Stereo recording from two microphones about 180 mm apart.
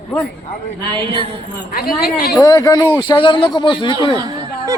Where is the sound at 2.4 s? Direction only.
20° left (ahead or behind).